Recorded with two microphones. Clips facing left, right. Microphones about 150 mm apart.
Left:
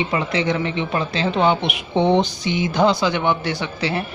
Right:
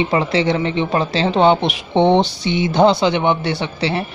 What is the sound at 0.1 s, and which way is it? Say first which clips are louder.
Speech: right 4 dB; 30° right (ahead or behind).